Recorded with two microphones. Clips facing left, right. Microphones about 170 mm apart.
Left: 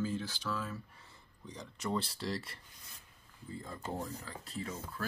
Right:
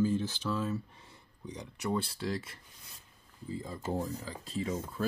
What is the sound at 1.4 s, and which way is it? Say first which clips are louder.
Speech: right 3 dB; 15° right (ahead or behind).